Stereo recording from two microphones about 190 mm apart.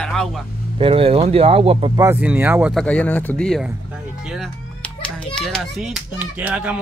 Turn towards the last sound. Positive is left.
turn(degrees=-5)  # may be behind; listen again after turning